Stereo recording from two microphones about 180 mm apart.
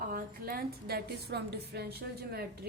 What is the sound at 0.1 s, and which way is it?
A woman's voice, 55° right (ahead or behind).